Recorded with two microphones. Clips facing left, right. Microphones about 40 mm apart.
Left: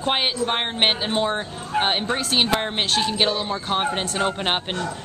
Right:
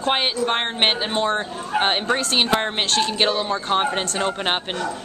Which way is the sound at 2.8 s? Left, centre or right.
Centre.